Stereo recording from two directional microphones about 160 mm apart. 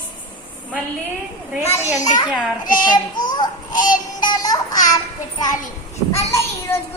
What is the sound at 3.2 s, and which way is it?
Speech, 25° left (ahead or behind).